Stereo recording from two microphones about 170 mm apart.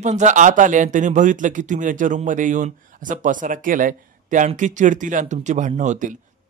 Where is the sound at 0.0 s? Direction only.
45° right (ahead or behind).